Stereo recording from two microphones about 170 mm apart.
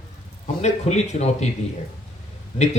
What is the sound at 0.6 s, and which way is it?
Speech, 40° left (ahead or behind).